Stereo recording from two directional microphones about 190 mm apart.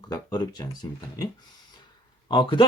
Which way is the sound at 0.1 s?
20° left (ahead or behind).